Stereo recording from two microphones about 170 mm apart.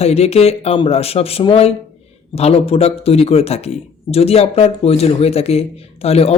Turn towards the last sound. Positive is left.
turn(degrees=35)  # may be behind; listen again after turning